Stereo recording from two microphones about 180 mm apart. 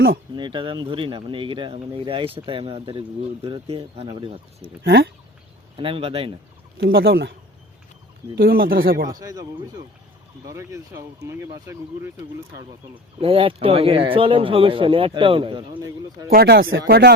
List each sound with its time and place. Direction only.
0.3 s speech: 25° right (ahead or behind)
4.8 s speech: 70° right (ahead or behind)
5.7 s speech: 30° right (ahead or behind)
6.7 s speech: 60° right (ahead or behind)
8.4 s speech: 55° right (ahead or behind)
9.0 s speech: 20° right (ahead or behind)
13.1 s speech: 30° right (ahead or behind)
16.3 s speech: 60° right (ahead or behind); by 17.1 s 80° right